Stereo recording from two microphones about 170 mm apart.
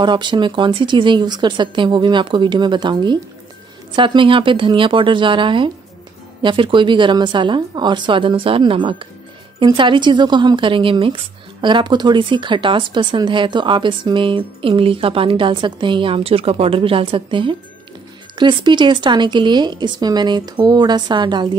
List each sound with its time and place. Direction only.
0.0 s speech: 25° right (ahead or behind)